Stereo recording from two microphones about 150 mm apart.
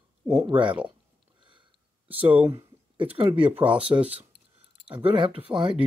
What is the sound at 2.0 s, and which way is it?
Speech, 35° right (ahead or behind).